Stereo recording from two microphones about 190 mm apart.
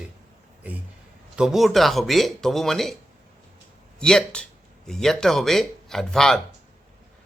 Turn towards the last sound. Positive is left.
turn(degrees=5)  # may be behind; listen again after turning